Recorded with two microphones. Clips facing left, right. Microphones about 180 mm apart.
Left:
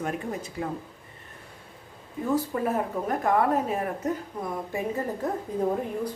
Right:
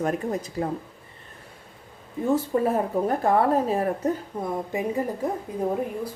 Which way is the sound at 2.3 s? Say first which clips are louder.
Right 4 dB; 30° right (ahead or behind).